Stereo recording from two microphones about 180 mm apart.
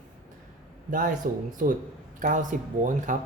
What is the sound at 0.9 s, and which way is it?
Speech, 50° right (ahead or behind).